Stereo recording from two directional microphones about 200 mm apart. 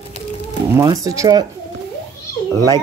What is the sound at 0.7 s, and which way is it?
Speech, 15° right (ahead or behind).